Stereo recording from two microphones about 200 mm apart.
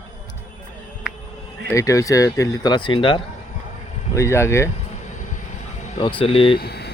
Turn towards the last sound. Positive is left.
turn(degrees=55)  # may be behind; listen again after turning